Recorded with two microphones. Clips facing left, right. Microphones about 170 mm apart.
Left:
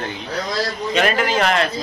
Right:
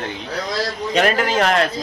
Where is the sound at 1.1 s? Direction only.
45° right (ahead or behind).